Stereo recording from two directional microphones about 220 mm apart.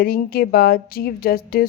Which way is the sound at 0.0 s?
40° left (ahead or behind).